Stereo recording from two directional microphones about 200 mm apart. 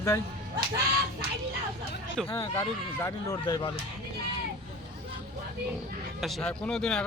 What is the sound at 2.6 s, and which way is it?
Speech, 15° left (ahead or behind).